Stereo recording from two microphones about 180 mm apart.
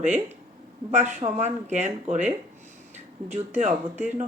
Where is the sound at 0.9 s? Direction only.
45° right (ahead or behind).